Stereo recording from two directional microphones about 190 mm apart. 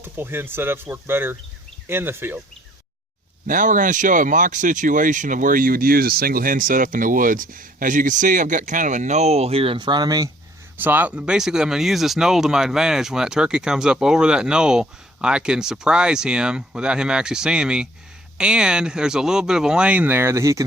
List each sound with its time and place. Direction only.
0.0 s speech: 10° right (ahead or behind)
3.4 s speech: 45° right (ahead or behind); by 10.2 s 20° right (ahead or behind)
10.8 s speech: 10° right (ahead or behind)